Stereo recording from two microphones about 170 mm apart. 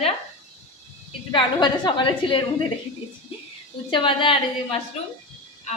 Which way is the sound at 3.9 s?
30° left (ahead or behind).